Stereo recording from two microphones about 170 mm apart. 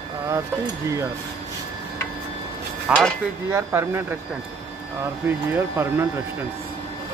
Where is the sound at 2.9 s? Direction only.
5° right (ahead or behind).